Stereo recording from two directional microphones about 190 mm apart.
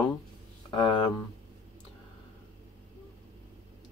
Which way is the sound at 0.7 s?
25° left (ahead or behind).